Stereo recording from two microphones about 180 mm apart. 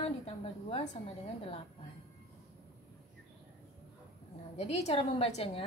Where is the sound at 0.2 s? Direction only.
30° left (ahead or behind).